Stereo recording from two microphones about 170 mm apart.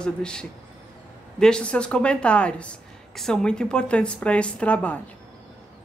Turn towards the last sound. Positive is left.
turn(degrees=5)  # may be behind; listen again after turning